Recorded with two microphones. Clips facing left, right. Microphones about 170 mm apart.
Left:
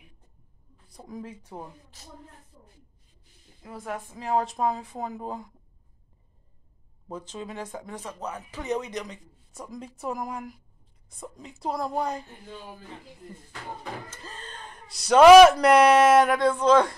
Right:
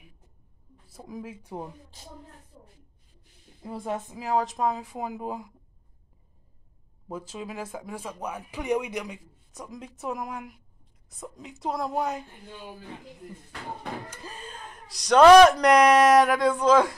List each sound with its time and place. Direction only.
0.8 s speech: 5° right (ahead or behind)
3.6 s speech: 25° right (ahead or behind)
4.2 s speech: centre (ahead or behind)
7.1 s speech: 5° right (ahead or behind)
14.1 s speech: 15° right (ahead or behind)